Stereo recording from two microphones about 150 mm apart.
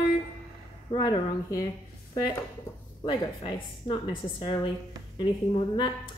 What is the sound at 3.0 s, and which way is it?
Speech, 35° left (ahead or behind).